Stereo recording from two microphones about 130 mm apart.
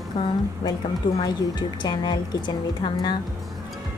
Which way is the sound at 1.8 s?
35° left (ahead or behind).